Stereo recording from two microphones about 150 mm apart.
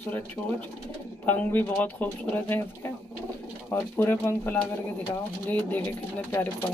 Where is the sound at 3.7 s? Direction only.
15° left (ahead or behind).